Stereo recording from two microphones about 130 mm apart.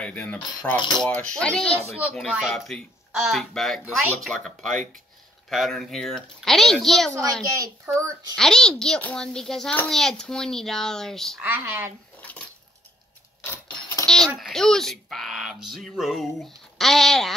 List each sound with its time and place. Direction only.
0.0 s cutlery: 10° left (ahead or behind)
1.0 s speech: 5° left (ahead or behind)
7.5 s a child's voice: 25° right (ahead or behind)
8.4 s speech: 5° left (ahead or behind)
11.4 s speech: 15° right (ahead or behind)
12.2 s dishes: 10° left (ahead or behind)
14.0 s a sound: 5° left (ahead or behind)
14.3 s speech: centre (ahead or behind)